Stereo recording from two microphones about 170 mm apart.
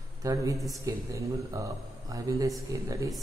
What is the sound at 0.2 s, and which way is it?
Speech, 20° right (ahead or behind).